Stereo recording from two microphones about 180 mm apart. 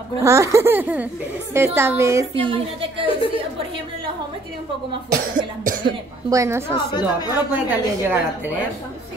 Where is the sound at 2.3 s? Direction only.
30° right (ahead or behind).